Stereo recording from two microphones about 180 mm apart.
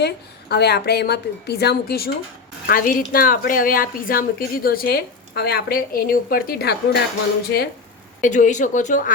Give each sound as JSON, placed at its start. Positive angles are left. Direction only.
{"t": 0.0, "sound": "speech", "side_deg": 65}
{"t": 8.2, "sound": "speech", "side_deg": 45}